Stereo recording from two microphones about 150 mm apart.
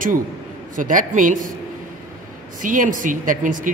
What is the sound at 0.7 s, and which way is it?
Speech, 60° right (ahead or behind).